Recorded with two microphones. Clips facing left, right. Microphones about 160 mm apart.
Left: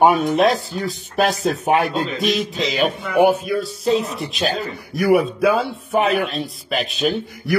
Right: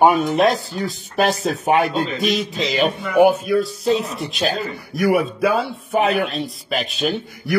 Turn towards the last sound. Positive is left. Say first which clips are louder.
# left 2 dB
turn(degrees=0)  # may be behind; listen again after turning